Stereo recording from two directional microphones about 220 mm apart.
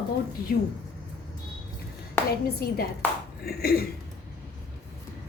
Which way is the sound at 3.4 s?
45° left (ahead or behind).